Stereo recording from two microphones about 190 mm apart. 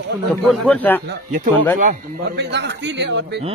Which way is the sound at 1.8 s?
45° right (ahead or behind).